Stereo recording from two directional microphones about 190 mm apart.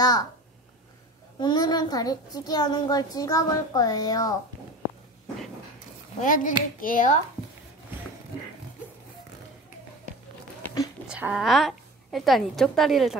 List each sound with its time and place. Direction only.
0.0 s a child's voice: 20° left (ahead or behind)
1.4 s a child's voice: 20° left (ahead or behind)
6.2 s speech: 45° left (ahead or behind)
11.1 s a woman's voice: 5° right (ahead or behind)